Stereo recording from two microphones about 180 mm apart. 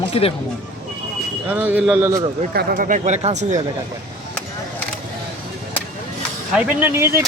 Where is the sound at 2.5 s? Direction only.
60° right (ahead or behind); by 3.6 s 40° right (ahead or behind).